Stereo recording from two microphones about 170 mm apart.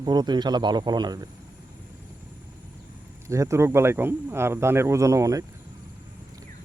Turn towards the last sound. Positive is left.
turn(degrees=-20)  # may be behind; listen again after turning